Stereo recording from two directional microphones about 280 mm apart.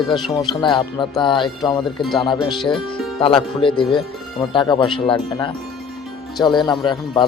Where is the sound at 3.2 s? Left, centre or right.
Centre.